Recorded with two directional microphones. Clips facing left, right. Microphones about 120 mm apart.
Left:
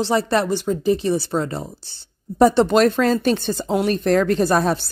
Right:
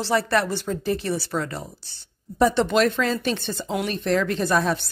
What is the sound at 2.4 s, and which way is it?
A woman's voice, 35° left (ahead or behind).